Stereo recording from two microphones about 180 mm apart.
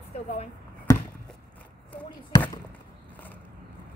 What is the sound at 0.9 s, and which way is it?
Chop, 20° left (ahead or behind).